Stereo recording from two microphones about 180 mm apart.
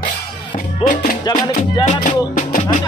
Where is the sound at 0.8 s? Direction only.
50° left (ahead or behind).